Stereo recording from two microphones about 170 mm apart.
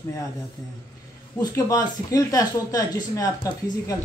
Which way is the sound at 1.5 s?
20° left (ahead or behind).